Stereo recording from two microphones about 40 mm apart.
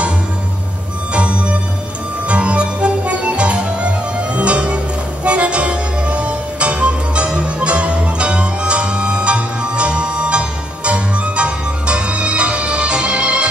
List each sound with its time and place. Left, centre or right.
1.1 s music: right